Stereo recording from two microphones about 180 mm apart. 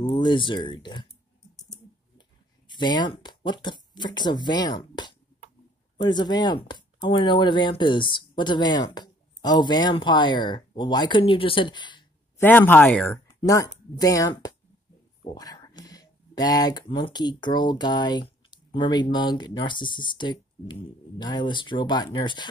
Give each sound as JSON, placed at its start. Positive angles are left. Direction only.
{"t": 0.0, "sound": "speech", "side_deg": 25}
{"t": 2.7, "sound": "speech", "side_deg": 25}
{"t": 12.4, "sound": "speech", "side_deg": 10}